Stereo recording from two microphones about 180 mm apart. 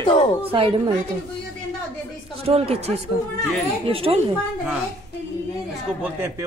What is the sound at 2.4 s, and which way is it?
Speech, 35° right (ahead or behind).